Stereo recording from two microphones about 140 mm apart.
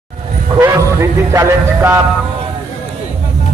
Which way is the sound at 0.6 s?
20° right (ahead or behind).